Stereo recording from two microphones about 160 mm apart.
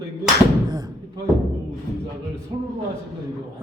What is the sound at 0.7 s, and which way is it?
Thump, 25° right (ahead or behind).